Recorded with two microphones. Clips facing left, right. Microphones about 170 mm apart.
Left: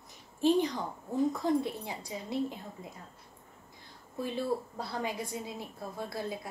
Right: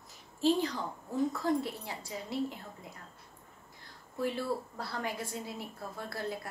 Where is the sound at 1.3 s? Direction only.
20° left (ahead or behind).